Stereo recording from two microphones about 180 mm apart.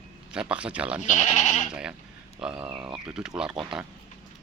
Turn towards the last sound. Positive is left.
turn(degrees=-5)  # may be behind; listen again after turning